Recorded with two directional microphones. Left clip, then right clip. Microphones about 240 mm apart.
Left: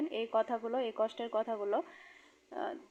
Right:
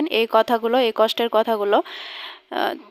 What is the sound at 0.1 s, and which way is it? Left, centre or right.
Speech, right.